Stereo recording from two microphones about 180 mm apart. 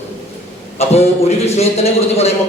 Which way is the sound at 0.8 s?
35° left (ahead or behind).